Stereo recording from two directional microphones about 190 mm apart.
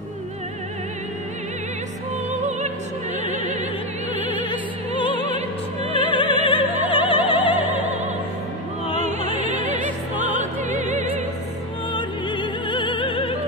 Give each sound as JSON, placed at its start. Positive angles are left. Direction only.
{"t": 4.5, "sound": "music", "side_deg": 25}
{"t": 5.9, "sound": "opera", "side_deg": 25}
{"t": 7.7, "sound": "opera", "side_deg": -35}
{"t": 9.3, "sound": "music", "side_deg": -40}
{"t": 10.1, "sound": "music", "side_deg": 25}
{"t": 11.9, "sound": "music", "side_deg": 25}